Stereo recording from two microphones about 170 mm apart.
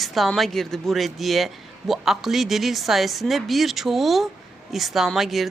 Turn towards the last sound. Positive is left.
turn(degrees=0)  # may be behind; listen again after turning